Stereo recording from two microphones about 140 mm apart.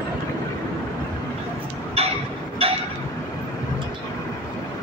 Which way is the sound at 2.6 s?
40° right (ahead or behind).